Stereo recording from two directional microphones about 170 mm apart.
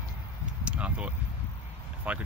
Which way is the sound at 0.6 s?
5° right (ahead or behind).